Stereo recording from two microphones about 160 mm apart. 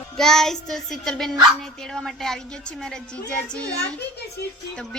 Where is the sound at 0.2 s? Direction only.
5° left (ahead or behind).